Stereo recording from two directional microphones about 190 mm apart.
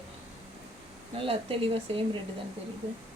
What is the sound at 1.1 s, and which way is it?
Speech, 30° right (ahead or behind).